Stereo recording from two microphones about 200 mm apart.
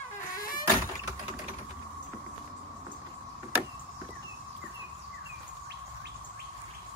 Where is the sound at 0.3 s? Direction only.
45° left (ahead or behind).